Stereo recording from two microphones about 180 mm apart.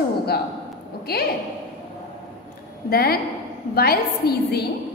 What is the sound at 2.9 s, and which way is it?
A woman's voice, 55° left (ahead or behind).